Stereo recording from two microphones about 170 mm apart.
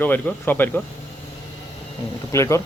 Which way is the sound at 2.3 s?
15° left (ahead or behind).